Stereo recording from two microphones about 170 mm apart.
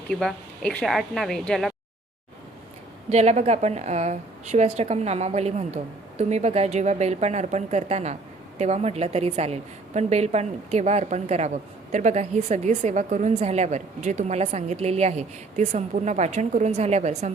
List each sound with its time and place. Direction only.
0.1 s speech: 5° left (ahead or behind)
3.1 s a woman's voice: 40° right (ahead or behind)